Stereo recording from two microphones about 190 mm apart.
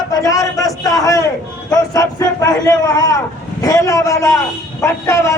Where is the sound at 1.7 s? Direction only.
20° left (ahead or behind).